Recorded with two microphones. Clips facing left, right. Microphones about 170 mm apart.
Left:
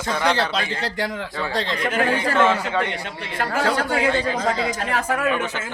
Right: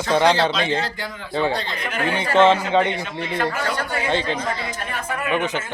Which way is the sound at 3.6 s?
90° left.